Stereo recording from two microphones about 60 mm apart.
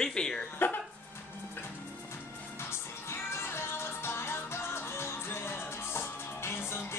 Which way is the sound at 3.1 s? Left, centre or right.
Left.